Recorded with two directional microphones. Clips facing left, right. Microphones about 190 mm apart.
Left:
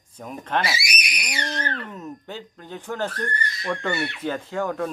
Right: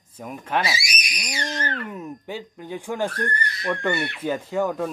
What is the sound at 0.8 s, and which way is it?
Screaming, 60° left (ahead or behind).